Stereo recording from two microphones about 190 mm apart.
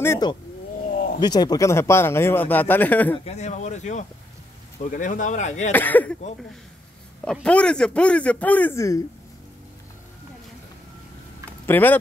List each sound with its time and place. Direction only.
0.0 s speech: 15° left (ahead or behind)
0.8 s a sound: 50° left (ahead or behind)
1.2 s speech: 20° left (ahead or behind)
3.3 s speech: 35° left (ahead or behind)
5.7 s speech: 10° left (ahead or behind)
7.4 s speech: 5° left (ahead or behind)
11.6 s speech: 10° left (ahead or behind)